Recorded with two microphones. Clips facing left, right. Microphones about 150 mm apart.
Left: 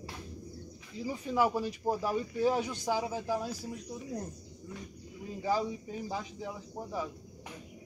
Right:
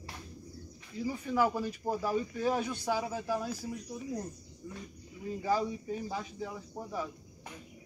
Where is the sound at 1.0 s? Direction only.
15° left (ahead or behind).